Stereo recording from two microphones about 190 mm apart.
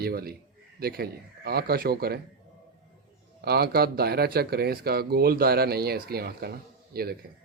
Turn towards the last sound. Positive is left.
turn(degrees=-55)  # may be behind; listen again after turning